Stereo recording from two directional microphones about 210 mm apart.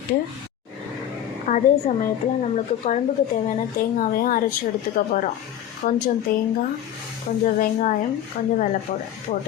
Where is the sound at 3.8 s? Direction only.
40° left (ahead or behind).